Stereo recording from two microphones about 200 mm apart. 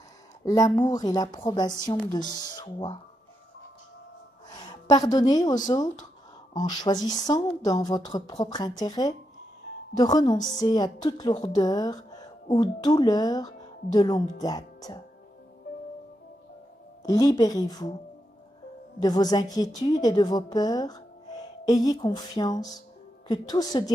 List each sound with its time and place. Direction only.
0.5 s a woman's voice: 20° left (ahead or behind)
4.6 s a woman's voice: 20° left (ahead or behind)
17.0 s a woman's voice: 20° left (ahead or behind)
18.9 s a woman's voice: 20° left (ahead or behind)